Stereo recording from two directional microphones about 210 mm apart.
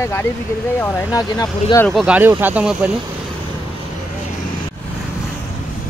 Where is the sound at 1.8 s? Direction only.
5° right (ahead or behind).